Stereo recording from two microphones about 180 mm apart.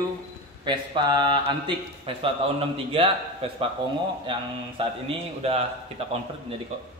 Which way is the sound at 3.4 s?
35° right (ahead or behind).